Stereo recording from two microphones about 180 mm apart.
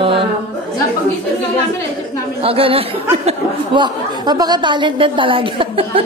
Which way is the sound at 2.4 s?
30° right (ahead or behind).